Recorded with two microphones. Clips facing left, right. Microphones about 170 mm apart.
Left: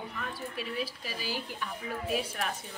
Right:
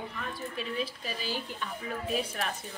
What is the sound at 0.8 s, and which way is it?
Speech, 10° left (ahead or behind).